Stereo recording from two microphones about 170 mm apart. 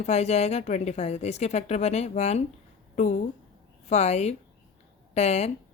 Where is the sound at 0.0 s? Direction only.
40° left (ahead or behind).